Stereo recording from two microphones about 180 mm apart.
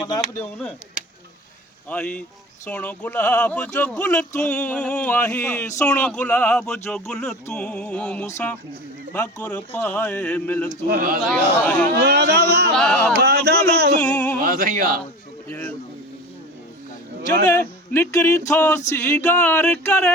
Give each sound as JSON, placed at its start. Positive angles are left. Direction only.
{"t": 1.9, "sound": "speech", "side_deg": 5}
{"t": 7.4, "sound": "music", "side_deg": 5}
{"t": 9.1, "sound": "speech", "side_deg": 5}
{"t": 10.8, "sound": "speech", "side_deg": -55}
{"t": 11.2, "sound": "speech", "side_deg": 5}
{"t": 11.9, "sound": "speech", "side_deg": -65}
{"t": 12.7, "sound": "music", "side_deg": 5}
{"t": 13.1, "sound": "speech", "side_deg": -65}
{"t": 14.0, "sound": "speech", "side_deg": 10}
{"t": 14.4, "sound": "speech", "side_deg": -55}
{"t": 15.4, "sound": "a sound", "side_deg": 10}
{"t": 17.6, "sound": "speech", "side_deg": 10}